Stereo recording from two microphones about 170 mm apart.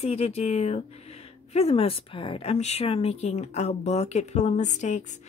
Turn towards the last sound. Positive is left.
turn(degrees=45)  # may be behind; listen again after turning